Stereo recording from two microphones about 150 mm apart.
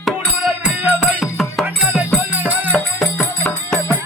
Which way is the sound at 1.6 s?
10° right (ahead or behind).